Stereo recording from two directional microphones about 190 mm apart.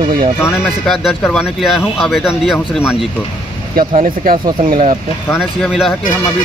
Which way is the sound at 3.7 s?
45° right (ahead or behind).